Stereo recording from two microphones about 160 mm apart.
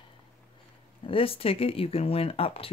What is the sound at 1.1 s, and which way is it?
Speech, 35° left (ahead or behind).